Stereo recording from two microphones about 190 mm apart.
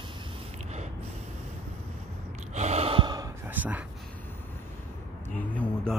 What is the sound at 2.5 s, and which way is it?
Gasp, 35° right (ahead or behind).